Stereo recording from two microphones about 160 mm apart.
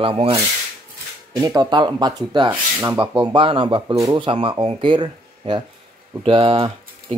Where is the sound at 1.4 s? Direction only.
25° right (ahead or behind).